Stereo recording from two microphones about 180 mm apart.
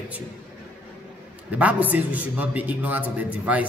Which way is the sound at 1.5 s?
10° right (ahead or behind).